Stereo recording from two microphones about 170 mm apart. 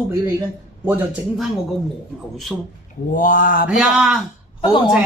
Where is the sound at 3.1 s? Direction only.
50° left (ahead or behind).